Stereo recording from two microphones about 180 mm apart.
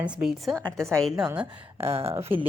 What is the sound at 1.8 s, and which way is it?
Speech, 35° right (ahead or behind).